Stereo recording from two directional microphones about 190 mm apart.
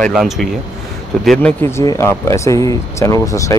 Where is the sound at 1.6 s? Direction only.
15° left (ahead or behind).